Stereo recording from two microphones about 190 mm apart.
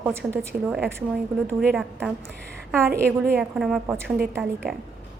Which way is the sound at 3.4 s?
Centre (ahead or behind).